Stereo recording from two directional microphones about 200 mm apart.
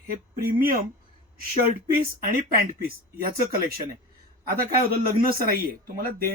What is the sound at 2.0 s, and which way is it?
Speech, 45° right (ahead or behind).